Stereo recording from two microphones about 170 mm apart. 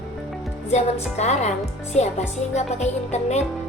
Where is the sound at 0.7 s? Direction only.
40° left (ahead or behind).